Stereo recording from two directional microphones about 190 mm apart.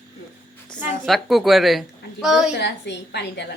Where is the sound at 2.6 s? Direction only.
65° left (ahead or behind).